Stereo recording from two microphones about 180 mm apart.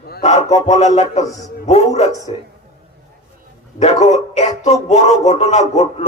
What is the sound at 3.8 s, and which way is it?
A man's voice, 35° left (ahead or behind).